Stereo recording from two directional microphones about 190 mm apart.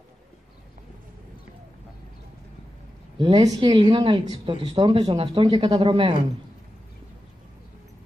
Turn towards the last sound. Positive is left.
turn(degrees=-25)  # may be behind; listen again after turning